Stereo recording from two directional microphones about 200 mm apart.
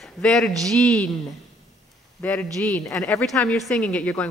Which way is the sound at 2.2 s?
10° left (ahead or behind).